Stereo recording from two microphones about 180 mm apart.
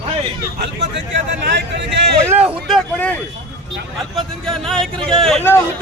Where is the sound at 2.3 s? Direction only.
5° right (ahead or behind).